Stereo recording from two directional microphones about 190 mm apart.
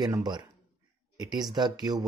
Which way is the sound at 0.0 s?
20° right (ahead or behind).